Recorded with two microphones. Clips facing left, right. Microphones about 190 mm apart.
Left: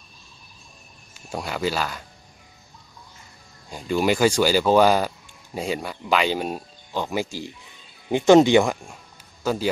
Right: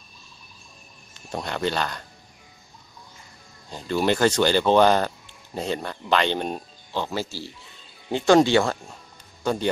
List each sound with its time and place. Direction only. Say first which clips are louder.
1.1 s speech: even; 5° left (ahead or behind)
3.7 s speech: left 1 dB; 10° left (ahead or behind)
9.4 s speech: even; 5° left (ahead or behind)